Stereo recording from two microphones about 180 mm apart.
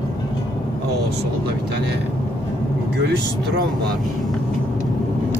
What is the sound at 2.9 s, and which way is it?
Speech, 65° right (ahead or behind).